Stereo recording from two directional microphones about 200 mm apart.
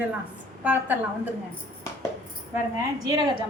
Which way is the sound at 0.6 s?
5° right (ahead or behind).